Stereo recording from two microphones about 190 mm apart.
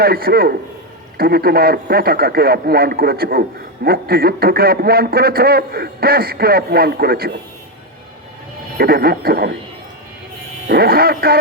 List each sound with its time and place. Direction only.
0.0 s speech: 50° right (ahead or behind)
8.8 s speech: 55° right (ahead or behind)
10.7 s speech: 55° right (ahead or behind)